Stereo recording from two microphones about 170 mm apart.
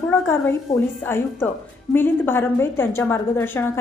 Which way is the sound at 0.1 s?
10° left (ahead or behind).